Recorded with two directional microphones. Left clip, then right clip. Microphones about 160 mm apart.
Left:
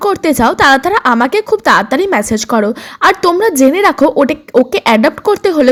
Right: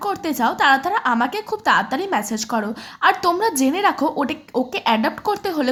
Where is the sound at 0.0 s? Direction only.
35° left (ahead or behind).